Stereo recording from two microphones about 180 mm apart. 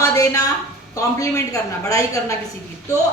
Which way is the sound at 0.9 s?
20° left (ahead or behind).